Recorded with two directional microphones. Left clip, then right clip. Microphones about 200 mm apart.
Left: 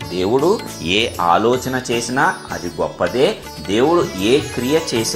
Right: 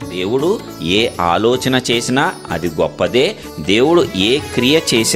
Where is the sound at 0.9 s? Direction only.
30° right (ahead or behind).